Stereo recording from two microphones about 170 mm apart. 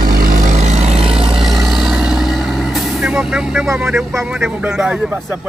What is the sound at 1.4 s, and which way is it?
Vehicle, centre (ahead or behind).